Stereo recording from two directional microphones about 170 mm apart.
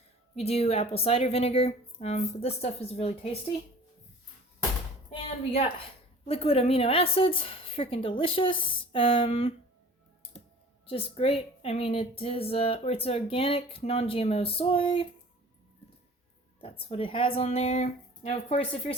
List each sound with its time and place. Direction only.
0.3 s speech: 35° left (ahead or behind)
5.1 s a sound: 35° left (ahead or behind)
6.2 s speech: 35° left (ahead or behind)
10.8 s speech: 35° left (ahead or behind)
16.6 s speech: 35° left (ahead or behind)